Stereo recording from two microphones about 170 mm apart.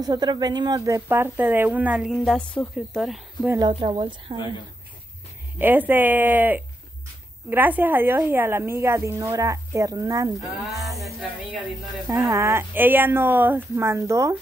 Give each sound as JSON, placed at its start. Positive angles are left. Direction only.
{"t": 0.0, "sound": "speech", "side_deg": -25}
{"t": 3.4, "sound": "a woman's voice", "side_deg": -20}
{"t": 5.6, "sound": "speech", "side_deg": -10}
{"t": 10.6, "sound": "speech", "side_deg": 0}
{"t": 12.3, "sound": "speech", "side_deg": -15}